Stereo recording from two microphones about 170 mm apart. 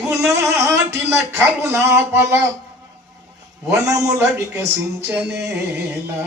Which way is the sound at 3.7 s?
15° right (ahead or behind).